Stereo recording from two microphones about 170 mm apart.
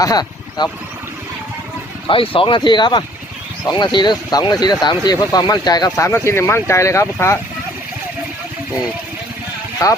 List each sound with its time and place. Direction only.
0.0 s speech: 25° left (ahead or behind)
2.0 s speech: 30° left (ahead or behind)